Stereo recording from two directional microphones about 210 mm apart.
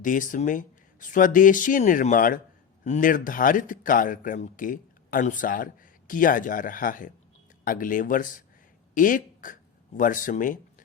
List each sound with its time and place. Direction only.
0.0 s speech: 40° left (ahead or behind)